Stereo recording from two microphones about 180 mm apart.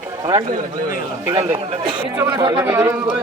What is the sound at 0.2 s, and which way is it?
A man's voice, 20° right (ahead or behind).